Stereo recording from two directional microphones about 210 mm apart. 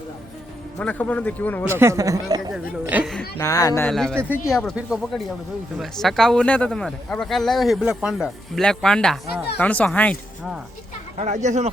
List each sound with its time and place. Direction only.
0.8 s speech: 5° left (ahead or behind)
1.6 s speech: 10° right (ahead or behind)
3.3 s speech: 15° left (ahead or behind)
3.8 s speech: 5° left (ahead or behind)
11.2 s speech: 35° right (ahead or behind)